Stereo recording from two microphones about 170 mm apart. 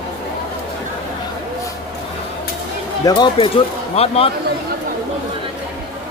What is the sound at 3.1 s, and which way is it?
Speech, 25° left (ahead or behind).